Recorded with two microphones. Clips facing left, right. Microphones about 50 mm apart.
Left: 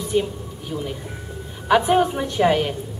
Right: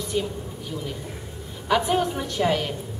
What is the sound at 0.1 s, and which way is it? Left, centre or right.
Speech, centre.